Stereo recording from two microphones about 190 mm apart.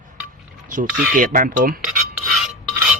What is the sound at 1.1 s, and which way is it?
Speech, 45° right (ahead or behind).